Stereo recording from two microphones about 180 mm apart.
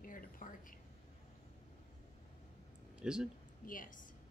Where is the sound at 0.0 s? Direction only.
50° left (ahead or behind).